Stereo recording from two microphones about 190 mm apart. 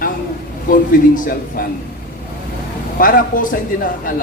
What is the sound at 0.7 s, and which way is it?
Speech, 45° left (ahead or behind).